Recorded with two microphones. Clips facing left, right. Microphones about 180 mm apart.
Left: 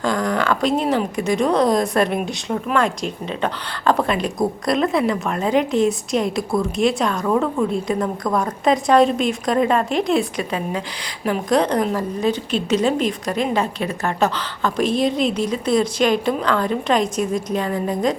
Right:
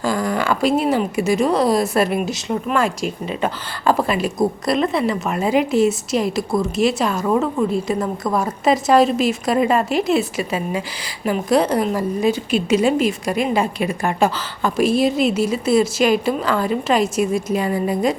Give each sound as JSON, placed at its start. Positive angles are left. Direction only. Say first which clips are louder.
{"t": 0.0, "sound": "a woman's voice", "louder": "even", "side_deg": -5}